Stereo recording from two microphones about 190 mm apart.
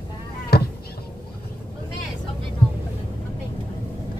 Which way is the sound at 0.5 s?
55° left (ahead or behind).